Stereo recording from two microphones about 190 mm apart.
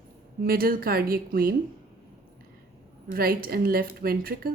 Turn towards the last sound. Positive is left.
turn(degrees=-50)  # may be behind; listen again after turning